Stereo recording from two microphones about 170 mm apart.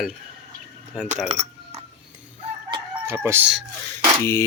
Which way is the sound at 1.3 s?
40° right (ahead or behind).